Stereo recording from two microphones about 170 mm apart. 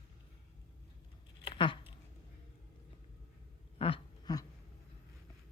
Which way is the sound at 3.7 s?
30° left (ahead or behind).